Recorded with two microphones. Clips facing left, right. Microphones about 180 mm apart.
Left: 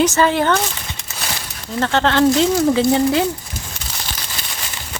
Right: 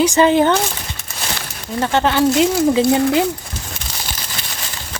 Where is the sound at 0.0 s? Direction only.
15° right (ahead or behind).